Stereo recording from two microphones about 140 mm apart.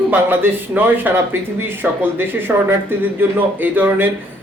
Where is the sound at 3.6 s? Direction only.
15° right (ahead or behind).